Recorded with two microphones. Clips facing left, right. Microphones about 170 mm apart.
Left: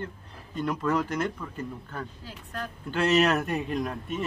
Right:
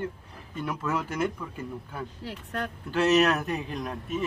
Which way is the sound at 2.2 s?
70° right (ahead or behind).